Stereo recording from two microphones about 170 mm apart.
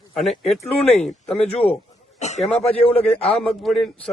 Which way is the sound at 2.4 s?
Centre (ahead or behind).